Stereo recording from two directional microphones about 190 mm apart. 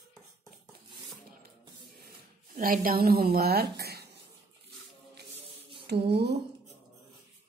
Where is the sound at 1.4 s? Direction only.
50° right (ahead or behind).